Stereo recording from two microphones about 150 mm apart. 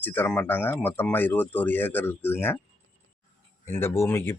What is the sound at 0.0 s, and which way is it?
Speech, 10° left (ahead or behind).